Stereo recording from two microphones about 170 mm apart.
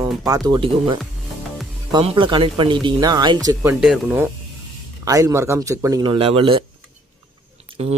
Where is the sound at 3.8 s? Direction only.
5° right (ahead or behind).